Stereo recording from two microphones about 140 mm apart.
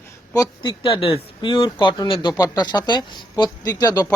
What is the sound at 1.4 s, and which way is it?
Speech, 35° left (ahead or behind).